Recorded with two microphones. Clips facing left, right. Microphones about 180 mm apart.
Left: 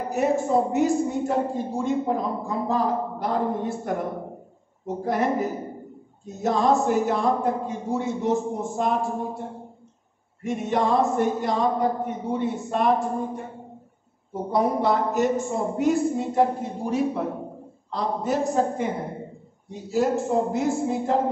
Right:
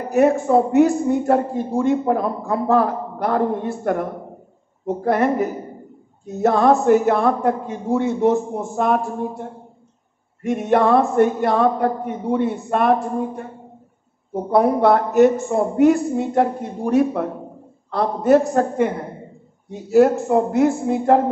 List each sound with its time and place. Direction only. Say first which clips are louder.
0.1 s a man's voice: right 7 dB; 60° right (ahead or behind)
10.4 s a man's voice: right 7 dB; 60° right (ahead or behind)
14.5 s a man's voice: right 7 dB; 60° right (ahead or behind)
19.9 s a man's voice: right 8 dB; 60° right (ahead or behind)